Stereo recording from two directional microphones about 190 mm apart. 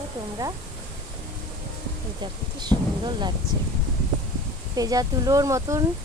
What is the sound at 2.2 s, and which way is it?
Speech, 25° right (ahead or behind).